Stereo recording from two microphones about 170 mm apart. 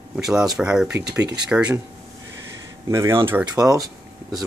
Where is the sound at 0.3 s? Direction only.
5° right (ahead or behind).